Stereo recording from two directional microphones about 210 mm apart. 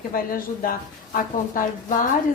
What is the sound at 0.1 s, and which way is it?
Speech, 45° left (ahead or behind).